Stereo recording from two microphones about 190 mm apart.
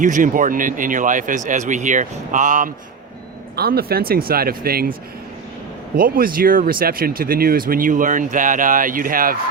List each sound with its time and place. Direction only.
0.0 s speech: 45° right (ahead or behind)
3.5 s speech: 55° right (ahead or behind)
6.0 s speech: 50° right (ahead or behind)